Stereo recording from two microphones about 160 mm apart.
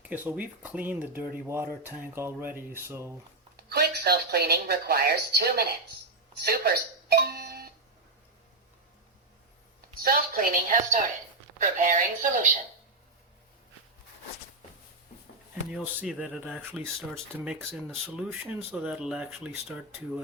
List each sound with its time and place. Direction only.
0.0 s speech: 10° right (ahead or behind)
3.6 s a woman's voice: 80° right
6.4 s doorbell: 75° right (ahead or behind)
10.0 s a woman's voice: 65° right (ahead or behind)
15.7 s speech: 5° right (ahead or behind)